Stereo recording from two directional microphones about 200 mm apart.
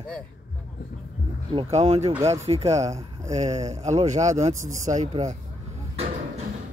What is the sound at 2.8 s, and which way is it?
Speech, 15° right (ahead or behind).